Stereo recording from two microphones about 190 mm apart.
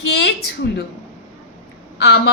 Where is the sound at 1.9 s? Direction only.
65° left (ahead or behind).